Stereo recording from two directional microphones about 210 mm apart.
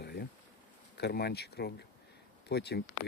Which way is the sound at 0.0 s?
50° left (ahead or behind).